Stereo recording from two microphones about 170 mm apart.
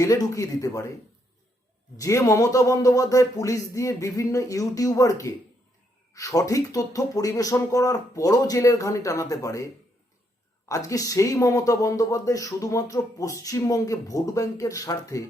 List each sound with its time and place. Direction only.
0.0 s speech: 20° left (ahead or behind)
2.0 s speech: 20° left (ahead or behind)
10.7 s speech: 20° left (ahead or behind)